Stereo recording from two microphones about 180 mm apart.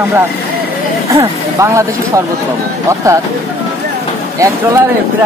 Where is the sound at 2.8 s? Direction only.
15° right (ahead or behind).